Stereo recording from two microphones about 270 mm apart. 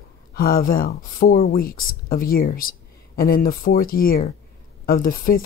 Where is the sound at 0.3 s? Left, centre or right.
Left.